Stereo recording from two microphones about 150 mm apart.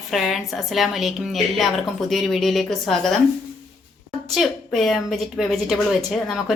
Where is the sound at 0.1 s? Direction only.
Centre (ahead or behind).